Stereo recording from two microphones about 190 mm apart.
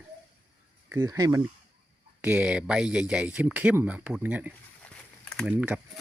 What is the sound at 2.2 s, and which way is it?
Speech, 5° right (ahead or behind).